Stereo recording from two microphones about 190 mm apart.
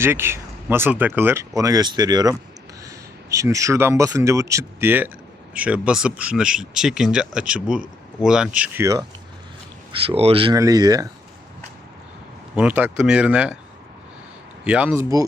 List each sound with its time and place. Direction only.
0.0 s speech: 15° right (ahead or behind)
9.9 s speech: 30° right (ahead or behind)
12.5 s speech: 10° right (ahead or behind)
14.6 s speech: 5° right (ahead or behind)